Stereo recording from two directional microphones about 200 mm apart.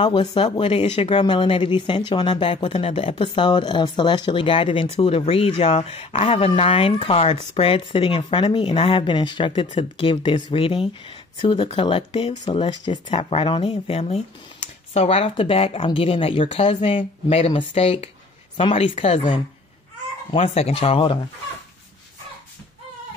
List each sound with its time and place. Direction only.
0.0 s speech: 25° left (ahead or behind)